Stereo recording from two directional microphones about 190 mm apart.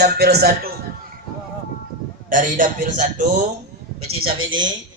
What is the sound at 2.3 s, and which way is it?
Speech, 45° right (ahead or behind).